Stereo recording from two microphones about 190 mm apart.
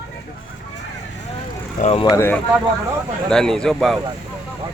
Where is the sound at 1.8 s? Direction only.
30° left (ahead or behind).